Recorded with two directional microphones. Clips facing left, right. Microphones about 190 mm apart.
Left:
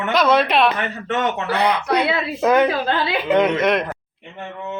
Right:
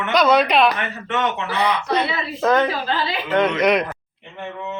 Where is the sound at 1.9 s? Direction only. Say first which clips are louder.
Left 3 dB; 15° left (ahead or behind).